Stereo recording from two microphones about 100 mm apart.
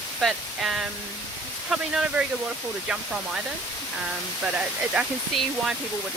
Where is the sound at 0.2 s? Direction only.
Centre (ahead or behind).